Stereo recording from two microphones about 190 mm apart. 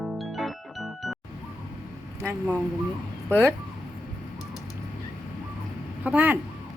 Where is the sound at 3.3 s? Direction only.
10° left (ahead or behind).